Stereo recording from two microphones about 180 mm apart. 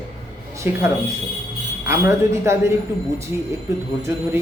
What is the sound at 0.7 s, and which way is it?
Speech, 10° right (ahead or behind).